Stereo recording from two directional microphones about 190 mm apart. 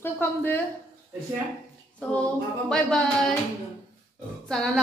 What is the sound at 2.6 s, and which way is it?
Speech, 5° left (ahead or behind).